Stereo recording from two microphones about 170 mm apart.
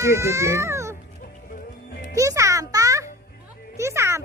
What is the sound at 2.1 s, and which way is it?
Music, 20° right (ahead or behind).